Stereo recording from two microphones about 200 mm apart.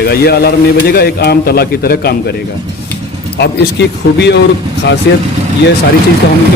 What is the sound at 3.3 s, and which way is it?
Speech, 55° left (ahead or behind).